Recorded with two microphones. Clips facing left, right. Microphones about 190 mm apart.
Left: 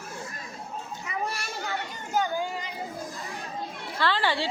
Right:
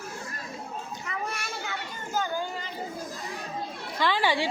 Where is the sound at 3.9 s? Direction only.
15° right (ahead or behind).